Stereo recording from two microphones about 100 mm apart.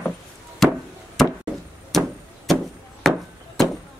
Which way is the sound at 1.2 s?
Centre (ahead or behind).